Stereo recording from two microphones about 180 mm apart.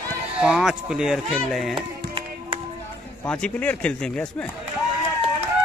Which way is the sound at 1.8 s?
30° right (ahead or behind).